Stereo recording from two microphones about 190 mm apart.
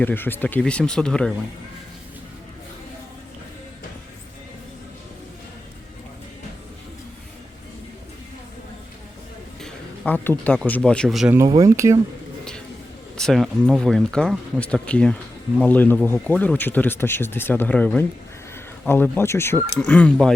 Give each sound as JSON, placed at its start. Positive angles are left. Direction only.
{"t": 0.0, "sound": "speech", "side_deg": 10}
{"t": 9.6, "sound": "speech", "side_deg": 5}
{"t": 11.3, "sound": "speech", "side_deg": -20}
{"t": 13.1, "sound": "speech", "side_deg": 0}